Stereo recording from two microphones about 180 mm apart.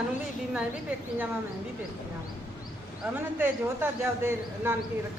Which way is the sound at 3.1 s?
10° right (ahead or behind).